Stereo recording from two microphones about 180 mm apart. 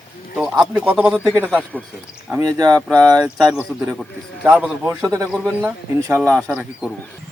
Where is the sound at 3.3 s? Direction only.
5° right (ahead or behind).